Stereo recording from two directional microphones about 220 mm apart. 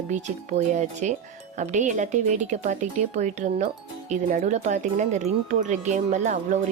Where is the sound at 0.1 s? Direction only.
35° right (ahead or behind).